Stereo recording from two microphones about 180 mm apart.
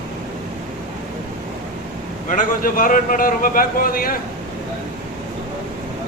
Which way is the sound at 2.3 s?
50° left (ahead or behind).